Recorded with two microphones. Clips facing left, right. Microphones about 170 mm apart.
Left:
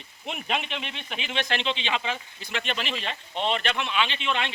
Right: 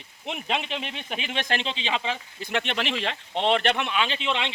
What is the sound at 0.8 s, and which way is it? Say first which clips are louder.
Speech: right 3 dB; 45° right (ahead or behind).